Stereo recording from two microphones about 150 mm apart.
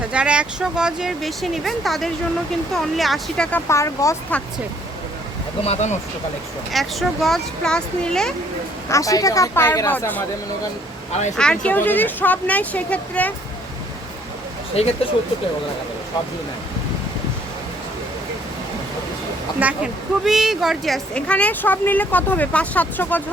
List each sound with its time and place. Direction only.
0.1 s speech: 10° right (ahead or behind)
3.7 s speech: 20° left (ahead or behind)
5.6 s speech: 50° left (ahead or behind)
6.7 s speech: centre (ahead or behind)
8.9 s speech: 20° left (ahead or behind)
11.3 s speech: 5° left (ahead or behind)
14.8 s speech: 40° left (ahead or behind)
19.5 s speech: 10° right (ahead or behind); by 23.2 s 10° left (ahead or behind)